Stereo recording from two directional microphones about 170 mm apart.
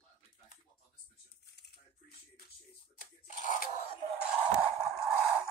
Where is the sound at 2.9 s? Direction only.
50° left (ahead or behind).